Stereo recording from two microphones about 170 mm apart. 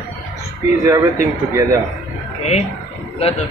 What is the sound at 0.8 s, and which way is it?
Speech, 15° right (ahead or behind).